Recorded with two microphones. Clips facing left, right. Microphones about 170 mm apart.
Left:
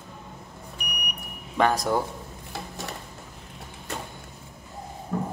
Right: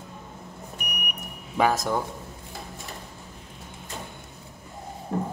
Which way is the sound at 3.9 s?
70° left (ahead or behind).